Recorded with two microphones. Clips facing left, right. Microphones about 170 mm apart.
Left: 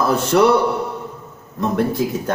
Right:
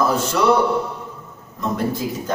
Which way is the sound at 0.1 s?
60° left (ahead or behind).